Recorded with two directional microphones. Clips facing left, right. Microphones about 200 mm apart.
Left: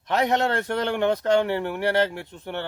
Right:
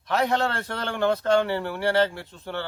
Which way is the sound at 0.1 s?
20° left (ahead or behind).